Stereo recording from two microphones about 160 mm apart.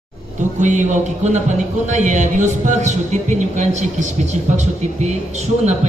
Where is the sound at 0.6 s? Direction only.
50° right (ahead or behind).